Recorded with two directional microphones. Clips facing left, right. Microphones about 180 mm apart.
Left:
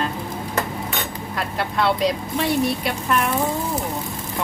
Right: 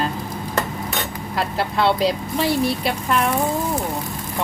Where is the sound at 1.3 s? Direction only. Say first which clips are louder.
Right 2 dB; 30° right (ahead or behind).